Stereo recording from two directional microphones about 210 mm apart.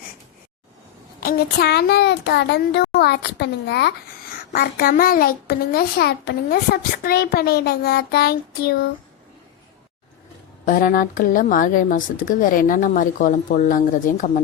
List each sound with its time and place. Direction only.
1.2 s a child's voice: 45° left (ahead or behind)
10.7 s speech: 40° left (ahead or behind)